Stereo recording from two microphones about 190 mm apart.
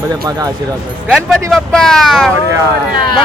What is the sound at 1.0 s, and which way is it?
Speech, centre (ahead or behind).